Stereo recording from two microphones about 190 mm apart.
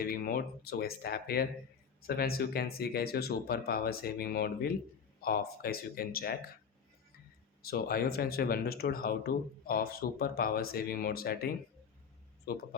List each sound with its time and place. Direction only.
0.0 s speech: 50° left (ahead or behind)
7.6 s speech: 55° left (ahead or behind)